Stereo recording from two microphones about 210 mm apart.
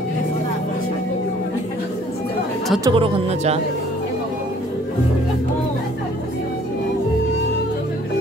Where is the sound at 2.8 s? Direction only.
25° right (ahead or behind).